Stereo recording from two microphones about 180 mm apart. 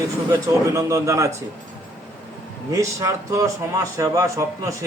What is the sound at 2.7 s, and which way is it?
Speech, 15° right (ahead or behind).